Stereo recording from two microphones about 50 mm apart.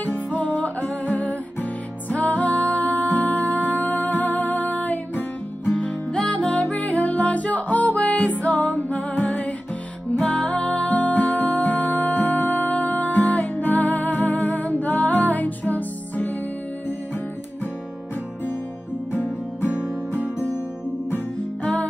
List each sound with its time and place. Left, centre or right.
0.0 s music: left
6.3 s music: left